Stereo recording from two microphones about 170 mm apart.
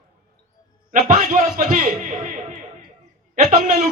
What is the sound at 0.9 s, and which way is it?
Speech, 50° right (ahead or behind).